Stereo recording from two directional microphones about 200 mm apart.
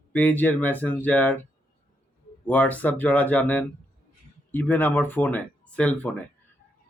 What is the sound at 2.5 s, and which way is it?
Speech, 10° left (ahead or behind).